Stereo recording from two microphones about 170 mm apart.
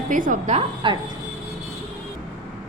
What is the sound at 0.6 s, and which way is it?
Speech, 30° right (ahead or behind).